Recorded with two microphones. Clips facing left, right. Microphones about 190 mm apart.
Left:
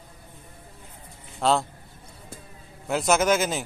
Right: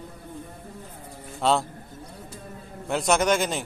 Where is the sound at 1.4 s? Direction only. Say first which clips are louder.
Even; centre (ahead or behind).